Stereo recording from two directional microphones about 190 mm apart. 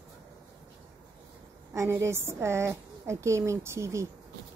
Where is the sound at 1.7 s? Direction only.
15° right (ahead or behind).